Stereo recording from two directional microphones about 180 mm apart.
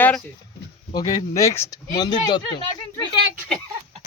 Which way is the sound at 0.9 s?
20° left (ahead or behind).